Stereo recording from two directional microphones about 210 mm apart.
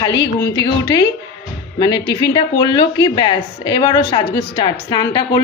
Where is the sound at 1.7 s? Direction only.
20° left (ahead or behind).